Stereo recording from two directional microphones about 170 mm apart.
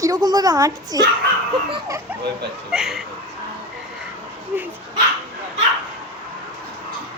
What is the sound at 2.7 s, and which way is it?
Speech, centre (ahead or behind).